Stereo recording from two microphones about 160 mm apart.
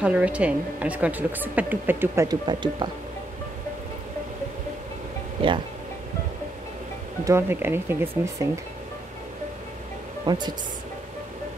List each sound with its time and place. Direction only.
0.0 s a woman's voice: 5° right (ahead or behind)
2.2 s speech: 30° right (ahead or behind)
7.2 s a woman's voice: 15° right (ahead or behind)
10.2 s speech: 25° right (ahead or behind)